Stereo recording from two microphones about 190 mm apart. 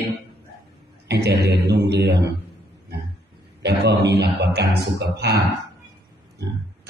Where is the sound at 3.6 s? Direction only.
60° right (ahead or behind).